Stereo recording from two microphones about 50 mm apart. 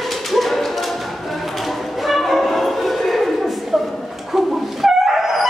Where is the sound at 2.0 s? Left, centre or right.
Centre.